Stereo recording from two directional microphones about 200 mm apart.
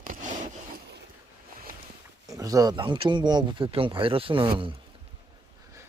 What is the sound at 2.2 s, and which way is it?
Speech, 15° right (ahead or behind).